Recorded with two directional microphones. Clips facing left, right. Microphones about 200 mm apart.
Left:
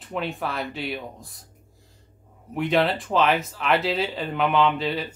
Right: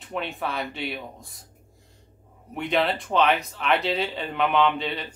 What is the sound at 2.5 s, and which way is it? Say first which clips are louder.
Speech: left 3 dB; centre (ahead or behind).